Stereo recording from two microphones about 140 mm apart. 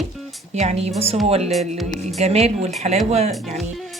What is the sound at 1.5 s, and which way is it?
Speech, centre (ahead or behind).